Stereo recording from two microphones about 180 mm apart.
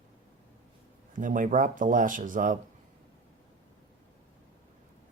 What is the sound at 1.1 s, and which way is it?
Speech, 45° right (ahead or behind).